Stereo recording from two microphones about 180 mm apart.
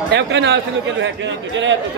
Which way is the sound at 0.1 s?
75° right (ahead or behind).